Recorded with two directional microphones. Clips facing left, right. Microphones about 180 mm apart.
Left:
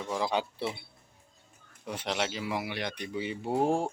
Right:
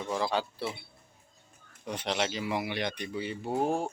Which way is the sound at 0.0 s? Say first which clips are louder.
Even; 10° left (ahead or behind).